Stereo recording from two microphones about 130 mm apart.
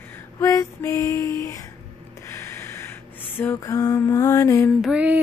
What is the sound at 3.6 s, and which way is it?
Lullaby, 30° left (ahead or behind).